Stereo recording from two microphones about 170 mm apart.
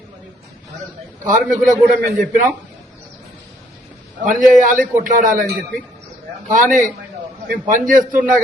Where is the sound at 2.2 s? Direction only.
50° right (ahead or behind).